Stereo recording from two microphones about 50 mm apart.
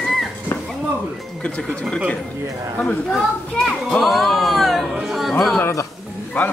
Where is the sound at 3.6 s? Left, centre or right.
Centre.